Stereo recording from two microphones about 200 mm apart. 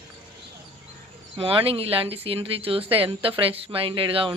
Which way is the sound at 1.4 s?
25° right (ahead or behind).